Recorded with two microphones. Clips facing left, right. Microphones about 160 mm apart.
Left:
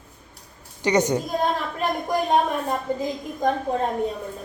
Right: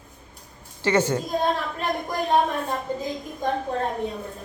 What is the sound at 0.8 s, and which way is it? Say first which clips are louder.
Speech: left 1 dB; 15° left (ahead or behind).